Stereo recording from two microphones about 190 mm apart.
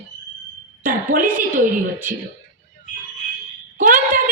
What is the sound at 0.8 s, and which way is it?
Speech, 45° right (ahead or behind).